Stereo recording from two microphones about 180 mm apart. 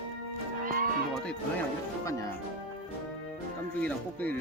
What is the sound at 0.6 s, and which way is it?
Music, 50° right (ahead or behind).